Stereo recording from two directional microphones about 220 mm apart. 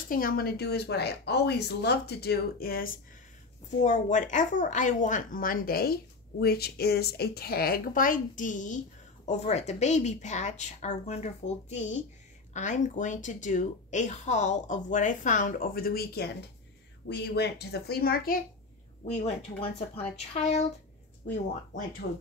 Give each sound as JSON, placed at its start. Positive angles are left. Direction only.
{"t": 0.1, "sound": "a woman's voice", "side_deg": 40}
{"t": 19.0, "sound": "speech", "side_deg": 30}
{"t": 22.0, "sound": "speech", "side_deg": 45}